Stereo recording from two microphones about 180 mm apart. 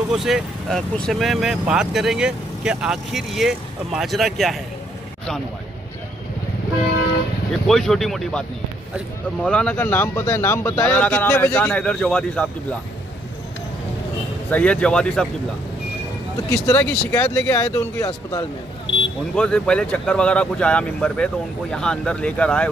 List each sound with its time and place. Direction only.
0.1 s speech: centre (ahead or behind)
7.6 s speech: centre (ahead or behind)
14.5 s speech: 5° left (ahead or behind)
16.4 s speech: 15° left (ahead or behind)
19.3 s speech: 5° left (ahead or behind)